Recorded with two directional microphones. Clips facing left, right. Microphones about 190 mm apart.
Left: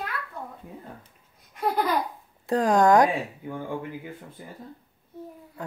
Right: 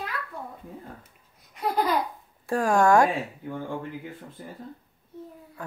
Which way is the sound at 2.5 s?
20° left (ahead or behind).